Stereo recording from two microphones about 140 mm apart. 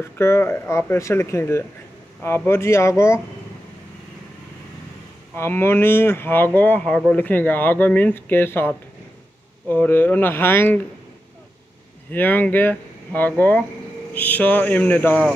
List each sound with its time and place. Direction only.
0.0 s speech: 15° left (ahead or behind)
5.3 s speech: 15° left (ahead or behind)
12.1 s speech: 15° left (ahead or behind)